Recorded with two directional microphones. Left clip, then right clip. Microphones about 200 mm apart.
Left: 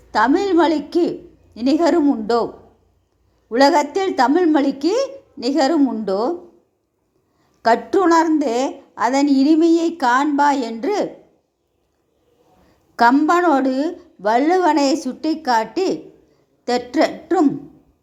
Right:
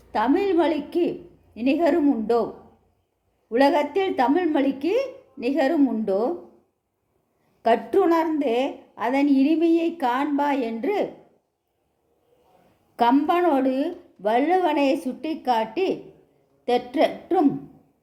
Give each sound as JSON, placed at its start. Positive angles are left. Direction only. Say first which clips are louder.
{"t": 0.1, "sound": "a woman's voice", "louder": "left 5 dB", "side_deg": 20}
{"t": 3.5, "sound": "a woman's voice", "louder": "left 5 dB", "side_deg": 20}
{"t": 7.6, "sound": "a woman's voice", "louder": "left 4 dB", "side_deg": 20}
{"t": 13.0, "sound": "a woman's voice", "louder": "left 6 dB", "side_deg": 20}